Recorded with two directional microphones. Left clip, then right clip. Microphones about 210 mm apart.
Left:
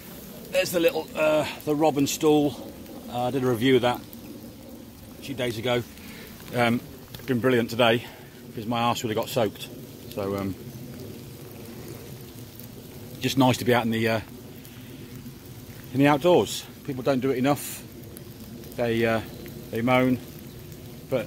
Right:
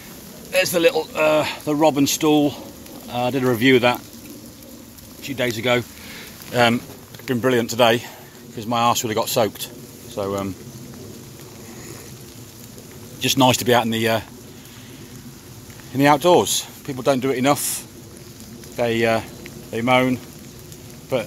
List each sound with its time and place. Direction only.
0.5 s speech: 35° right (ahead or behind)
5.2 s speech: 35° right (ahead or behind)
6.5 s speech: 20° right (ahead or behind)
7.2 s speech: 5° right (ahead or behind)
13.2 s speech: 5° right (ahead or behind)
15.9 s speech: 10° right (ahead or behind)